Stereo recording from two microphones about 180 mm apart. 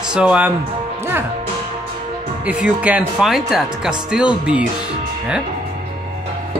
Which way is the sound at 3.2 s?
Centre (ahead or behind).